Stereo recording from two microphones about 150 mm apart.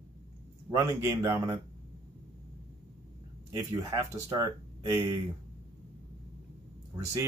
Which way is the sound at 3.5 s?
25° right (ahead or behind).